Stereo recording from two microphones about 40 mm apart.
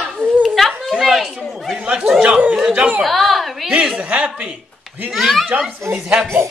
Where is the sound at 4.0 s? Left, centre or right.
Right.